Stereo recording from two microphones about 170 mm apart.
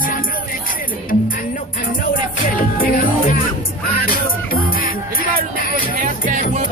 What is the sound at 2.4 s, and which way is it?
Music, 55° left (ahead or behind).